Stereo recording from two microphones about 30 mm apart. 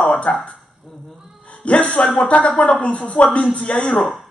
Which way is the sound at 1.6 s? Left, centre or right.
Left.